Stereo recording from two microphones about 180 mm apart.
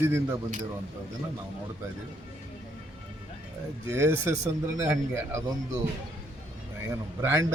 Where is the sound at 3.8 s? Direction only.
15° right (ahead or behind).